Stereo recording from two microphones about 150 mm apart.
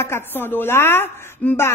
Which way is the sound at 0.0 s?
15° left (ahead or behind).